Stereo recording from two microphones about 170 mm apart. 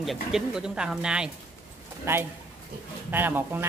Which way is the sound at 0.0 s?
Centre (ahead or behind).